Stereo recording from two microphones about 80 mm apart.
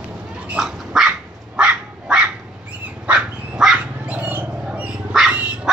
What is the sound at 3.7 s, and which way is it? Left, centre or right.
Dog, centre.